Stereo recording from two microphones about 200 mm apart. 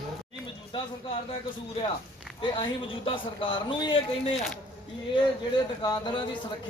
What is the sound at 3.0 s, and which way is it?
Speech, 25° left (ahead or behind).